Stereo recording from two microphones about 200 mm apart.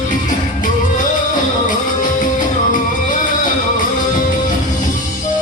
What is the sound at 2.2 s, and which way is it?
Music, 40° left (ahead or behind).